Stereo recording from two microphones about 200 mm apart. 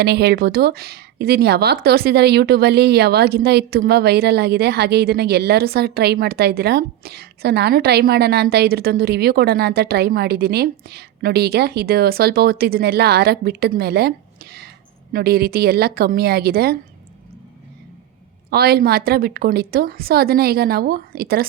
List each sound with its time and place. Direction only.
0.0 s speech: 55° right (ahead or behind)
15.1 s speech: 50° right (ahead or behind)
18.5 s speech: 50° right (ahead or behind)